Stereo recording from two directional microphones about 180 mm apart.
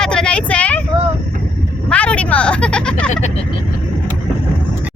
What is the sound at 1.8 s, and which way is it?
Vehicle, 5° left (ahead or behind).